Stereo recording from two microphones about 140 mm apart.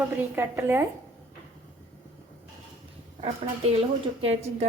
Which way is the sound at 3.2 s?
45° right (ahead or behind).